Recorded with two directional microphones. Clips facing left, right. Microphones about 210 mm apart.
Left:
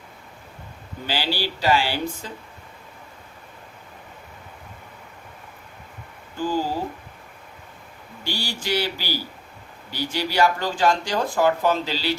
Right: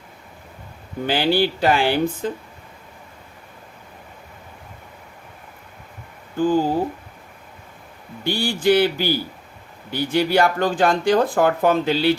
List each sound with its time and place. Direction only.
1.0 s speech: 55° right (ahead or behind)
6.3 s speech: 55° right (ahead or behind)
8.2 s speech: 55° right (ahead or behind)